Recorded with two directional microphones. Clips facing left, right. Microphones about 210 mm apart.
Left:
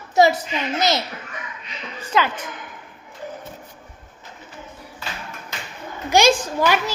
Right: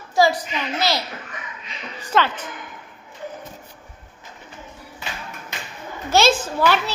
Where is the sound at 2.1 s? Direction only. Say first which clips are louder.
Right 1 dB; centre (ahead or behind).